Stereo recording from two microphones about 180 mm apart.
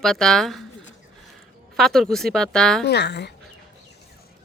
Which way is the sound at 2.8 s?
65° left (ahead or behind).